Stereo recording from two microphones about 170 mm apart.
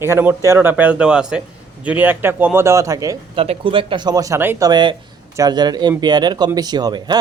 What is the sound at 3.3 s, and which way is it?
Speech, 35° right (ahead or behind).